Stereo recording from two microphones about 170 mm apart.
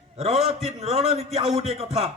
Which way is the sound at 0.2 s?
40° right (ahead or behind).